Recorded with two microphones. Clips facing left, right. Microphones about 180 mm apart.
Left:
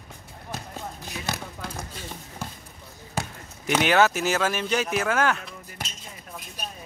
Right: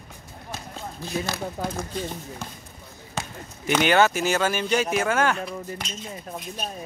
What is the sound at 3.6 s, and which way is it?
Speech, centre (ahead or behind).